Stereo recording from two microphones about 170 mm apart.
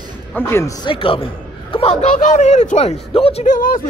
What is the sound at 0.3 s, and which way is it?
Speech, 15° left (ahead or behind).